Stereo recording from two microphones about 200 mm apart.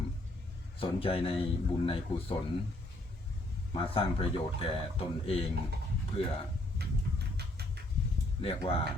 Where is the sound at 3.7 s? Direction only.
25° left (ahead or behind).